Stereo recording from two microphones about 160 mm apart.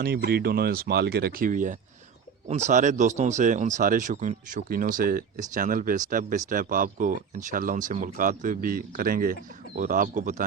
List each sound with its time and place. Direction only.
0.3 s speech: 80° right; by 10.4 s 55° right (ahead or behind)